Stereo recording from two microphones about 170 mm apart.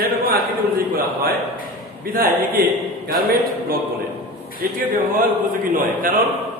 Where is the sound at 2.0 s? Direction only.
60° right (ahead or behind).